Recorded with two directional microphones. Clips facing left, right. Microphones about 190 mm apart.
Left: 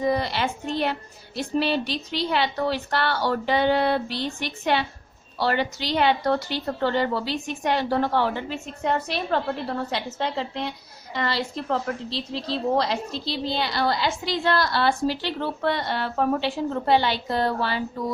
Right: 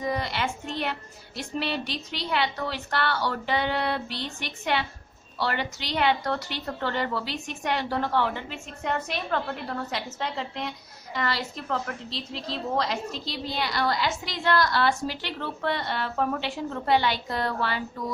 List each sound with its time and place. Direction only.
0.0 s a woman's voice: 30° left (ahead or behind)